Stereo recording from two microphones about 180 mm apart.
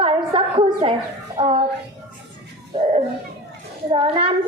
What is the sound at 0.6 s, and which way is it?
Speech, 30° right (ahead or behind).